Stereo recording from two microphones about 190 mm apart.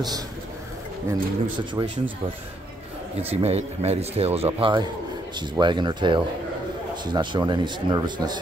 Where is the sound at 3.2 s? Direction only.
35° right (ahead or behind).